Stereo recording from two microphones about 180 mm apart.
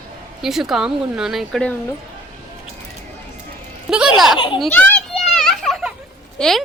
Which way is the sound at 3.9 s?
5° right (ahead or behind).